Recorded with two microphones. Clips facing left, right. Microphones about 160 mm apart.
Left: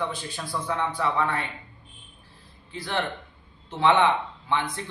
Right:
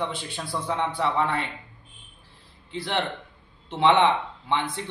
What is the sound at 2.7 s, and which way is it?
Speech, 25° right (ahead or behind).